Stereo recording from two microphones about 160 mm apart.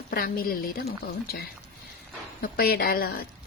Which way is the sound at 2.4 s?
70° left (ahead or behind).